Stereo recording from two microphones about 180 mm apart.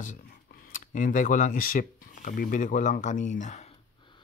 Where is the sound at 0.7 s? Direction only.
45° left (ahead or behind).